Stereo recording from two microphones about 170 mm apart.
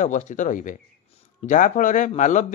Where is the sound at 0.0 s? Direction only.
45° left (ahead or behind).